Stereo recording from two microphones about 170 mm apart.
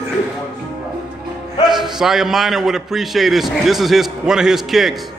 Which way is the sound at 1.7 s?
Centre (ahead or behind).